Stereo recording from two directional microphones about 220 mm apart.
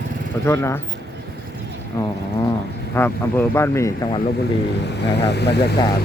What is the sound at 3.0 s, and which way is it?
Speech, 10° left (ahead or behind).